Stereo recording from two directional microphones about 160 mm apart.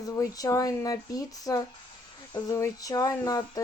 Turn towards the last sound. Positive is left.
turn(degrees=25)  # may be behind; listen again after turning